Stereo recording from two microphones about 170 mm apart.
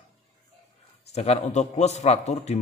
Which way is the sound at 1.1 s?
40° left (ahead or behind).